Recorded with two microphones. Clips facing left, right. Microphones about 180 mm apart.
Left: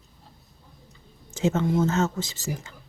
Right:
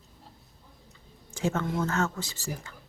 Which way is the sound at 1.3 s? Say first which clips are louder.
Left 6 dB; 20° left (ahead or behind).